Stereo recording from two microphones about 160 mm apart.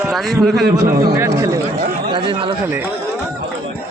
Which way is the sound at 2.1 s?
30° right (ahead or behind).